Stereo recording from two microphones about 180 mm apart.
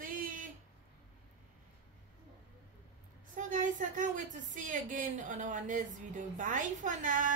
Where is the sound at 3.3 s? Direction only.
45° right (ahead or behind).